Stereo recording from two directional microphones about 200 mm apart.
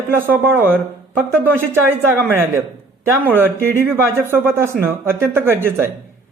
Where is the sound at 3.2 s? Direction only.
10° right (ahead or behind).